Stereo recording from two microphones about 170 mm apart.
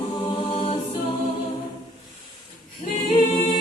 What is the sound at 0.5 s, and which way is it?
A capella, 35° left (ahead or behind).